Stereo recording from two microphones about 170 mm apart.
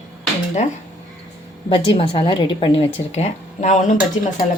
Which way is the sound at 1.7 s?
30° left (ahead or behind).